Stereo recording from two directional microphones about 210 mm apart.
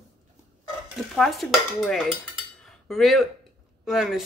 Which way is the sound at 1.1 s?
Centre (ahead or behind).